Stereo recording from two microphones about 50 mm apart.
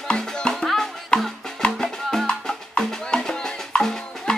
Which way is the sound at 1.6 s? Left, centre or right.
Centre.